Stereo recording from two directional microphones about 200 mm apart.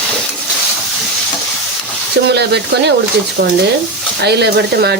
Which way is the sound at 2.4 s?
55° right (ahead or behind).